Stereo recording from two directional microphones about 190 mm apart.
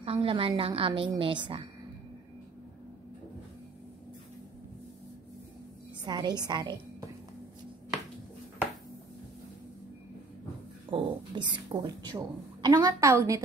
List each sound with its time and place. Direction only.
0.0 s a woman's voice: 30° right (ahead or behind)
6.0 s a woman's voice: 20° right (ahead or behind)
10.9 s a woman's voice: 25° right (ahead or behind)